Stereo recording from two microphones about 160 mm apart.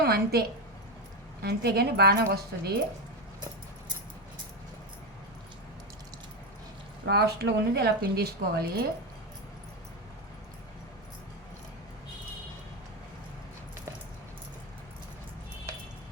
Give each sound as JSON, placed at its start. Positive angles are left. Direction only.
{"t": 0.0, "sound": "a woman's voice", "side_deg": -80}
{"t": 7.0, "sound": "a woman's voice", "side_deg": -90}